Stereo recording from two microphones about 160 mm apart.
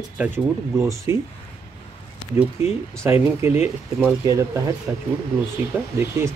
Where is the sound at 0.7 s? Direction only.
20° right (ahead or behind).